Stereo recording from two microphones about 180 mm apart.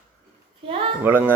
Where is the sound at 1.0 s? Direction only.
10° right (ahead or behind).